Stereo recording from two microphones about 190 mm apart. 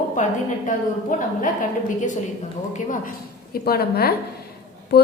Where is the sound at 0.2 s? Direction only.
40° left (ahead or behind).